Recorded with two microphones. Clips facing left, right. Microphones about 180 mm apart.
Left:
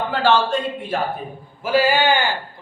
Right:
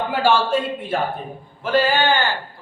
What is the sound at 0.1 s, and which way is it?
Speech, 10° right (ahead or behind).